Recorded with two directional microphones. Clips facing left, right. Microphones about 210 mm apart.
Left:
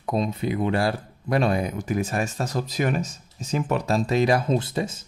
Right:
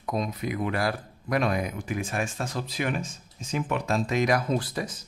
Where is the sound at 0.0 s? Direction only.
30° left (ahead or behind).